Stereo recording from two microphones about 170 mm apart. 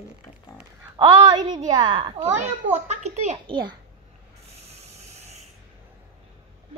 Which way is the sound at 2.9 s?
40° right (ahead or behind).